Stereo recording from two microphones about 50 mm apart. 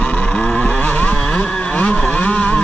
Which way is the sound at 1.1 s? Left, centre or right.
Centre.